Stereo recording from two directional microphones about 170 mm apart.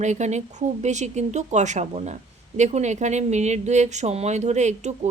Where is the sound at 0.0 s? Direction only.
45° right (ahead or behind).